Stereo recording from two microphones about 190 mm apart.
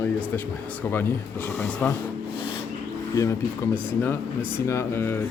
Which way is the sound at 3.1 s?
15° left (ahead or behind).